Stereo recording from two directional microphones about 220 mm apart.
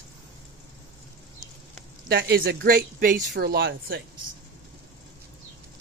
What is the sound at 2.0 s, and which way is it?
Speech, 45° right (ahead or behind).